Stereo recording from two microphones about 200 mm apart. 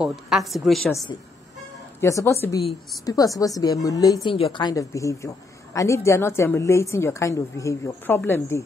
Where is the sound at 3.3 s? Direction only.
15° left (ahead or behind).